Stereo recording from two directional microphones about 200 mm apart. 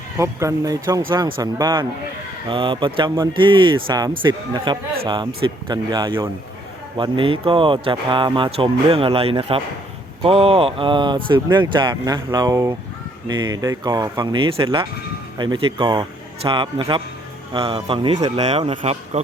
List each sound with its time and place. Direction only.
0.2 s speech: 15° right (ahead or behind)